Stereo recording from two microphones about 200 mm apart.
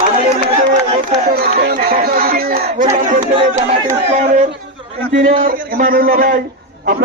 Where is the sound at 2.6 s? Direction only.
40° right (ahead or behind).